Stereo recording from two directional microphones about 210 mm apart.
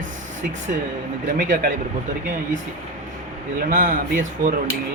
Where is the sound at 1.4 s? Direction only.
40° right (ahead or behind).